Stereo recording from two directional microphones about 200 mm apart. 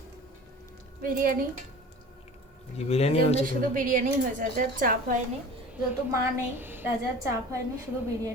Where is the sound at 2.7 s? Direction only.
30° left (ahead or behind).